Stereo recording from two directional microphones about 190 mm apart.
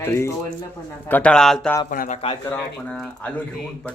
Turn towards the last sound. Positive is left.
turn(degrees=5)  # may be behind; listen again after turning